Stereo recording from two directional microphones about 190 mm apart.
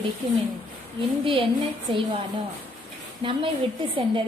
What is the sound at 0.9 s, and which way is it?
Speech, 30° right (ahead or behind).